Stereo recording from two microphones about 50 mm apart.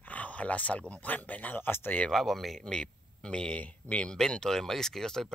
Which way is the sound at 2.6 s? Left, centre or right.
Centre.